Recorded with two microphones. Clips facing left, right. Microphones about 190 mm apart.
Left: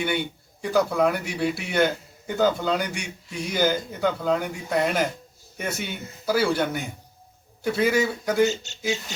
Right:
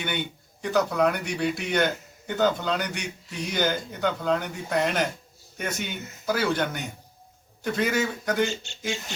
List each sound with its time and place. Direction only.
0.0 s speech: 10° left (ahead or behind)
8.4 s speech: 40° left (ahead or behind)